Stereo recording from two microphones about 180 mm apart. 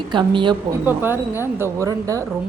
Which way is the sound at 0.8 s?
10° right (ahead or behind).